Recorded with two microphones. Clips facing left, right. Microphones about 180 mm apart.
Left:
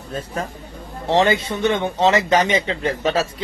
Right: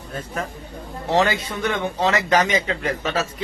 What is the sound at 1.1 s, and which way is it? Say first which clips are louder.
A man's voice: left 3 dB; 25° left (ahead or behind).